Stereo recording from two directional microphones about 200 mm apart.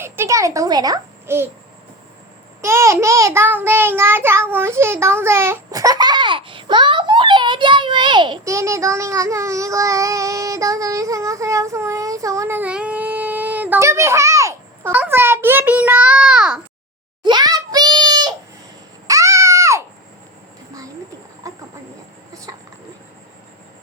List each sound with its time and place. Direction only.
0.0 s a child's voice: 15° right (ahead or behind)
2.6 s child singing: 15° right (ahead or behind)
17.2 s a sound: 20° right (ahead or behind)
21.5 s chicken: 15° right (ahead or behind)